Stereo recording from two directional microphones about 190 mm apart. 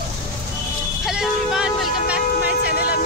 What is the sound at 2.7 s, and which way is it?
Music, 55° left (ahead or behind).